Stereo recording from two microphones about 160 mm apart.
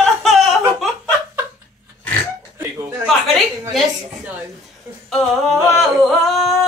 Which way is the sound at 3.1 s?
Centre (ahead or behind).